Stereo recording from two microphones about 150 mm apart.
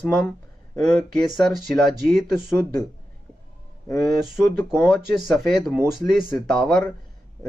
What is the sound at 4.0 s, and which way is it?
Speech, centre (ahead or behind).